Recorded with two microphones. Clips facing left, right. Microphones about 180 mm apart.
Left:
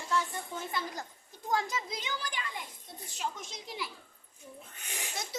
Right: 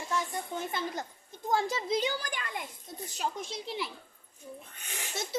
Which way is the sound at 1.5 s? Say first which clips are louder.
Right 4 dB; 30° right (ahead or behind).